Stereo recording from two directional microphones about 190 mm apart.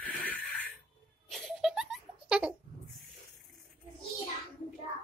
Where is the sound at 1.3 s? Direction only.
Centre (ahead or behind).